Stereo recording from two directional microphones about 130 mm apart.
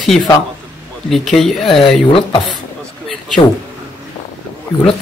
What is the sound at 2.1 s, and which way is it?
Speech, 40° left (ahead or behind).